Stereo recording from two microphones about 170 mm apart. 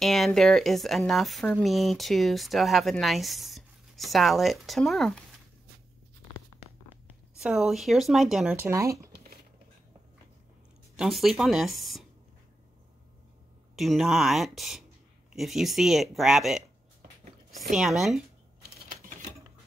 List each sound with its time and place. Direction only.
0.0 s speech: centre (ahead or behind)
7.3 s speech: centre (ahead or behind)
8.5 s speech: 15° right (ahead or behind)
11.0 s speech: centre (ahead or behind)
13.7 s speech: centre (ahead or behind)
17.7 s speech: centre (ahead or behind)
18.9 s a sound: 50° right (ahead or behind)